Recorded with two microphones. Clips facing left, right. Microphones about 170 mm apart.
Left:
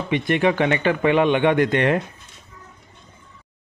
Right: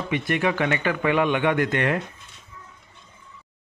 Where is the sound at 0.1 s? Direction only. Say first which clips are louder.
Left 5 dB; 25° left (ahead or behind).